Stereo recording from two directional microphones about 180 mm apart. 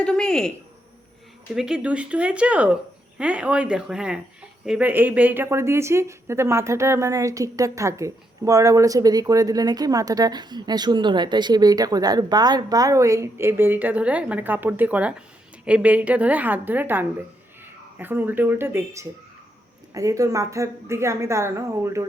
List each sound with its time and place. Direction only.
0.0 s speech: 5° left (ahead or behind)
1.5 s a woman's voice: 5° right (ahead or behind)